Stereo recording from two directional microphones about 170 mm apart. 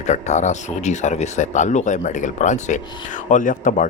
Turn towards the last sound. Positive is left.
turn(degrees=50)  # may be behind; listen again after turning